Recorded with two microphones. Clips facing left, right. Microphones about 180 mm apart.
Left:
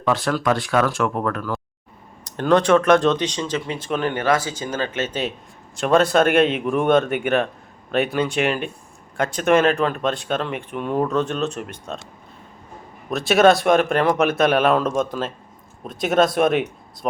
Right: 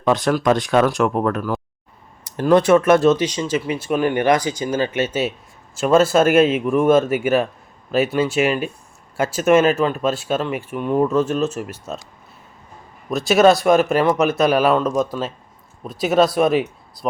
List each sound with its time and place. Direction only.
0.0 s speech: 20° right (ahead or behind)
13.1 s speech: centre (ahead or behind)